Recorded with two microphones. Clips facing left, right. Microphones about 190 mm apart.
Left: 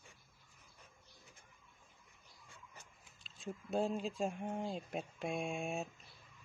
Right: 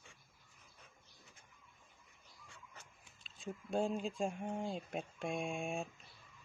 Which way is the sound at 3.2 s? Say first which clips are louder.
Even; centre (ahead or behind).